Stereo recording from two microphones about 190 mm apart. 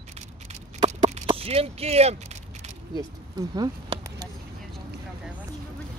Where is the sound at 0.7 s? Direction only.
35° right (ahead or behind).